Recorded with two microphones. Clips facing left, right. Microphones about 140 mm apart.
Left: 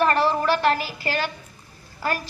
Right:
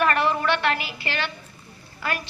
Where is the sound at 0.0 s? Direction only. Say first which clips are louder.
Left 2 dB; 35° left (ahead or behind).